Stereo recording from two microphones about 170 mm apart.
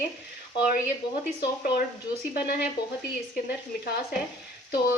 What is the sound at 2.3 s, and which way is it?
Speech, 65° left (ahead or behind).